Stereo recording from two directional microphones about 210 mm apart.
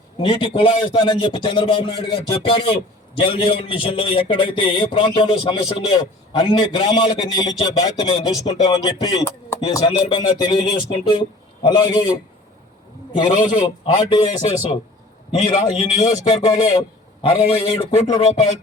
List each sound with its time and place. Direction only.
0.2 s music: 25° left (ahead or behind)
16.3 s music: 20° left (ahead or behind)
18.2 s a sound: 30° left (ahead or behind)